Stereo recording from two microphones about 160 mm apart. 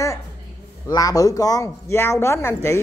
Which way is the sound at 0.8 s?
20° left (ahead or behind).